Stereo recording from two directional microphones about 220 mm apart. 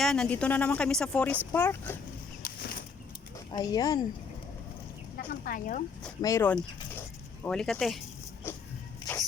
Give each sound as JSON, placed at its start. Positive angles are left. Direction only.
{"t": 0.0, "sound": "a woman's voice", "side_deg": 5}
{"t": 2.4, "sound": "a sound", "side_deg": 40}
{"t": 3.5, "sound": "speech", "side_deg": 15}
{"t": 5.1, "sound": "speech", "side_deg": 40}
{"t": 6.2, "sound": "a woman's voice", "side_deg": 10}
{"t": 8.4, "sound": "a sound", "side_deg": 10}